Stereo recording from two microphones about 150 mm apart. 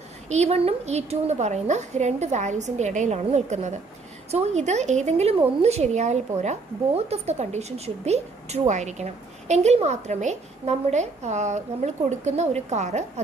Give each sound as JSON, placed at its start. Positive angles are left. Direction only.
{"t": 0.3, "sound": "a woman's voice", "side_deg": -45}